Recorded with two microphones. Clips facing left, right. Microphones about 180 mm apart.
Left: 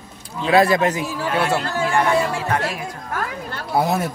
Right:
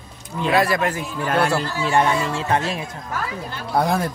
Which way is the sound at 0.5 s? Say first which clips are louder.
Left 5 dB; 25° left (ahead or behind).